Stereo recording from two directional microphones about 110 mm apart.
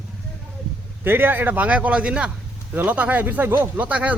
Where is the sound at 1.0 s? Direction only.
20° right (ahead or behind).